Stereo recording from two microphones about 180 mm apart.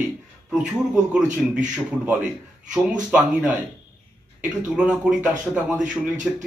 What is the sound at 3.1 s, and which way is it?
Speech, 10° right (ahead or behind).